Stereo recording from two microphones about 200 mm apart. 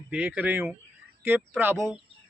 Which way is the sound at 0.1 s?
10° right (ahead or behind).